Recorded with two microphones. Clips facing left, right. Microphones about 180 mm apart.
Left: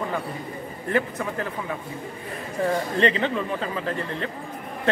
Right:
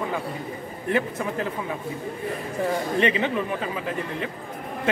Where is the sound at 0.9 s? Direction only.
15° right (ahead or behind).